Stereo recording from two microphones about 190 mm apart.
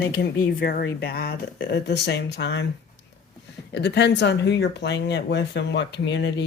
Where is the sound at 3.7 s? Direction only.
65° left (ahead or behind).